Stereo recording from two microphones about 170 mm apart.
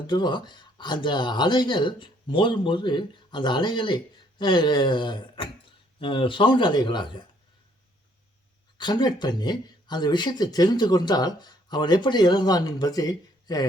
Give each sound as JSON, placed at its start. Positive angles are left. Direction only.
{"t": 0.1, "sound": "speech", "side_deg": 25}
{"t": 8.8, "sound": "speech", "side_deg": 25}